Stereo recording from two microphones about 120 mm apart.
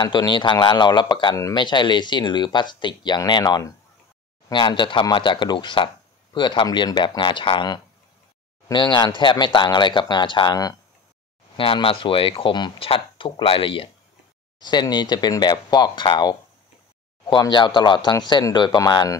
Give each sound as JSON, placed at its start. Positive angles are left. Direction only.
{"t": 0.0, "sound": "speech", "side_deg": 40}
{"t": 11.5, "sound": "speech", "side_deg": 45}
{"t": 14.6, "sound": "speech", "side_deg": 40}